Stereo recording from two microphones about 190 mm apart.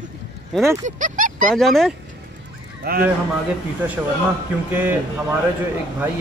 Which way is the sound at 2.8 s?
50° right (ahead or behind).